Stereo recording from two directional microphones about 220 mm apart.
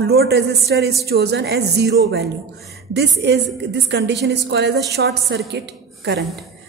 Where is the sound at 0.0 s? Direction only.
45° right (ahead or behind).